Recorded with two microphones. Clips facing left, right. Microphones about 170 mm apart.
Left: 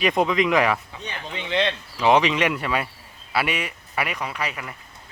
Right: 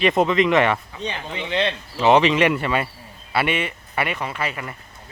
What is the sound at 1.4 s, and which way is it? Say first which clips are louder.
Speech: even; 15° right (ahead or behind).